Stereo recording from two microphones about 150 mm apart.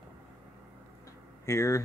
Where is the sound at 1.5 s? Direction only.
20° left (ahead or behind).